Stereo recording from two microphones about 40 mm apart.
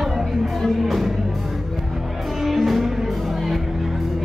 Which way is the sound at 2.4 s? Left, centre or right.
Centre.